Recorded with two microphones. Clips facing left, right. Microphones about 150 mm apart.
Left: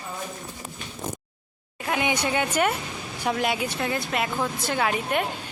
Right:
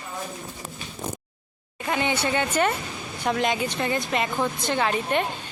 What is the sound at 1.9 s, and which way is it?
Speech, 10° left (ahead or behind).